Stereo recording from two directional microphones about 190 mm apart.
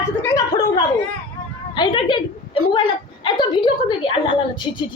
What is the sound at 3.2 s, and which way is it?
A woman's voice, 25° left (ahead or behind).